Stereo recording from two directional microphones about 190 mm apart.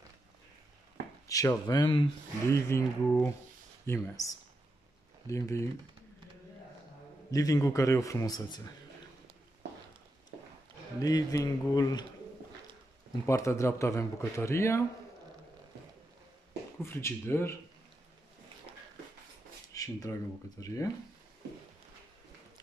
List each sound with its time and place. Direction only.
1.2 s speech: 15° left (ahead or behind)
2.5 s a man's voice: 15° left (ahead or behind)
7.2 s a man's voice: 20° left (ahead or behind)
11.0 s speech: 20° left (ahead or behind)
13.3 s a man's voice: 15° left (ahead or behind)
16.8 s a man's voice: 15° left (ahead or behind)
19.7 s a sound: 15° left (ahead or behind)
20.6 s a man's voice: 15° left (ahead or behind)